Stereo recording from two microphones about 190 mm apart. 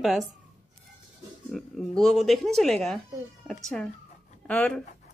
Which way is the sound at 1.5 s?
Centre (ahead or behind).